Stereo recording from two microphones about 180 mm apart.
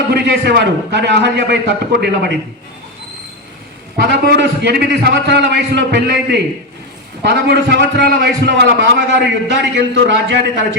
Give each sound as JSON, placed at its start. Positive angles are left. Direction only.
{"t": 0.1, "sound": "a man's voice", "side_deg": -70}
{"t": 3.9, "sound": "a man's voice", "side_deg": -75}